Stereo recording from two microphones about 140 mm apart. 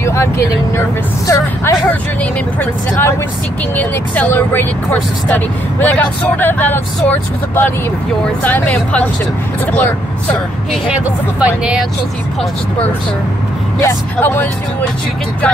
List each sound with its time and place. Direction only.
0.0 s speech: 20° left (ahead or behind)
10.9 s speech: 10° right (ahead or behind)
13.7 s speech: 20° left (ahead or behind)